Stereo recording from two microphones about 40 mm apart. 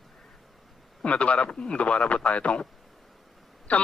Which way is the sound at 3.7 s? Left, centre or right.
Left.